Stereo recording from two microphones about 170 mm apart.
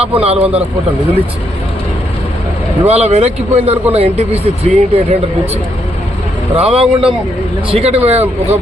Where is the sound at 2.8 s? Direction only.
40° right (ahead or behind).